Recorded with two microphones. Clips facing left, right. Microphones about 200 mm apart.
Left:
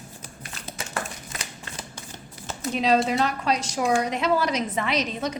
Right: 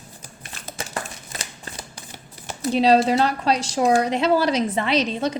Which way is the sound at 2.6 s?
35° right (ahead or behind).